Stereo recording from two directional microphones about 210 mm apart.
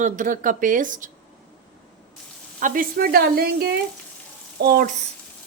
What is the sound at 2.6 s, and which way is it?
Speech, 40° right (ahead or behind).